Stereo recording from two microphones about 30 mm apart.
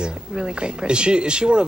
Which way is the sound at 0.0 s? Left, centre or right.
Right.